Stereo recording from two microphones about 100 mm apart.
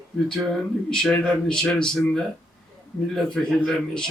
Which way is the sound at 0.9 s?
5° left (ahead or behind).